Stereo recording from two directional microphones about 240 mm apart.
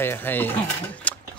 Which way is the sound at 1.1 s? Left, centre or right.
Centre.